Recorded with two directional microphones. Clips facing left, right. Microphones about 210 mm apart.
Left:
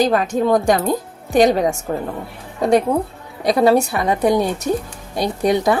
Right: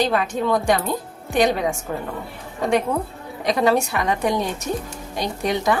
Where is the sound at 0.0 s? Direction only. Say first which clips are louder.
Left 4 dB; 45° left (ahead or behind).